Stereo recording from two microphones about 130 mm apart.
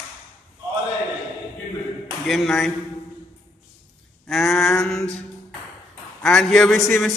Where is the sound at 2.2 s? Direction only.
Centre (ahead or behind).